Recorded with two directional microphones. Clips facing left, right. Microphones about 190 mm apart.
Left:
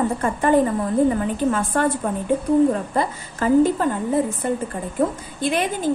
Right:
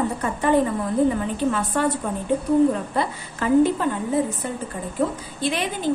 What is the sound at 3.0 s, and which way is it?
Speech, 40° left (ahead or behind).